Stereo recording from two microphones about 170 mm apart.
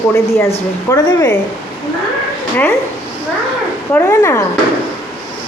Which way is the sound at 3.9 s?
15° left (ahead or behind).